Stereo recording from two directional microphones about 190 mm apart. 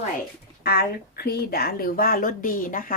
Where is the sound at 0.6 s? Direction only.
55° left (ahead or behind).